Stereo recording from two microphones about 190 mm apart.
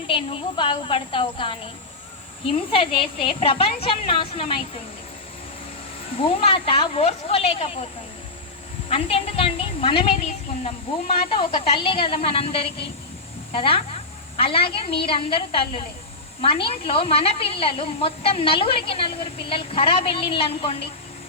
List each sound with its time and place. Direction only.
0.1 s a woman's voice: 30° left (ahead or behind)
6.1 s speech: 30° left (ahead or behind)
8.9 s a woman's voice: 30° left (ahead or behind)